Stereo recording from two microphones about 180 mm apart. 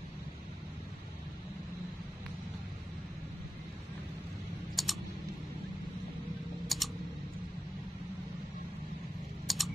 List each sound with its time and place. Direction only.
4.8 s typing: centre (ahead or behind)
6.7 s tick: centre (ahead or behind)
9.5 s typing: centre (ahead or behind)